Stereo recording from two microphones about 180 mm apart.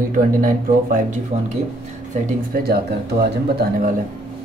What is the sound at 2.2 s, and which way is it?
Speech, 60° right (ahead or behind).